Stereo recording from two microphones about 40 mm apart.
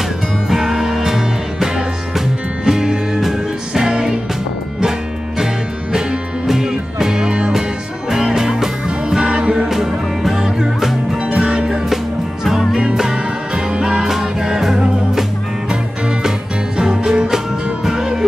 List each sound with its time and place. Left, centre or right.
0.5 s music: centre
5.9 s music: centre
8.1 s music: centre
9.3 s music: right
9.7 s music: centre
12.9 s music: centre